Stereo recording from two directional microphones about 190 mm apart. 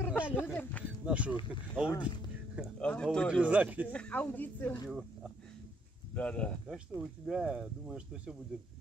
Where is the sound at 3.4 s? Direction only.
10° right (ahead or behind).